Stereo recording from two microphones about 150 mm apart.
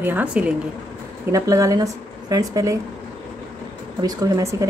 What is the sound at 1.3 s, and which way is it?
Speech, 25° right (ahead or behind).